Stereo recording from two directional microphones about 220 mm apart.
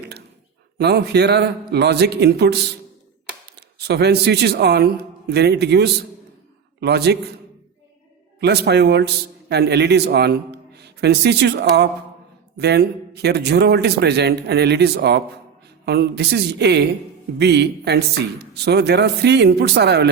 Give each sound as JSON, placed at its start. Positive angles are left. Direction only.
{"t": 0.8, "sound": "a man's voice", "side_deg": -45}
{"t": 8.4, "sound": "a man's voice", "side_deg": -50}